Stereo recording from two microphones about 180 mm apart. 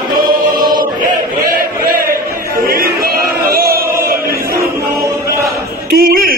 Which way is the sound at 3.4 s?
55° right (ahead or behind).